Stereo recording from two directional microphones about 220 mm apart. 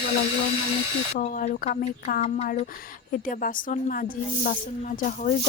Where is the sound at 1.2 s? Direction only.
35° left (ahead or behind).